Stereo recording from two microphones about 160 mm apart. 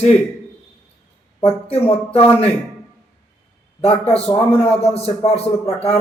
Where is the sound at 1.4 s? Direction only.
40° left (ahead or behind).